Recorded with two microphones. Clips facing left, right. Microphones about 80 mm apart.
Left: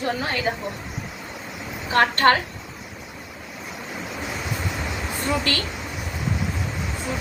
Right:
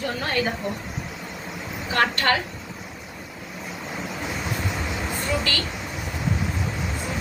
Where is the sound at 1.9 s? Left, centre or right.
Left.